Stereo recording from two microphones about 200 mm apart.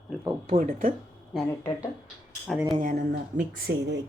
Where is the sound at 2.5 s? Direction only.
Centre (ahead or behind).